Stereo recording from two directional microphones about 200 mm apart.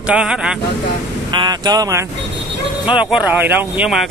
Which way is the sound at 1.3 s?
20° right (ahead or behind).